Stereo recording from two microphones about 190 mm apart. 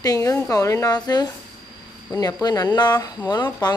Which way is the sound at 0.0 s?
20° left (ahead or behind).